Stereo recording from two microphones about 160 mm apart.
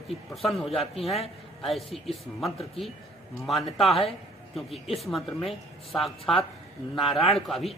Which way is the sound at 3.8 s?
Centre (ahead or behind).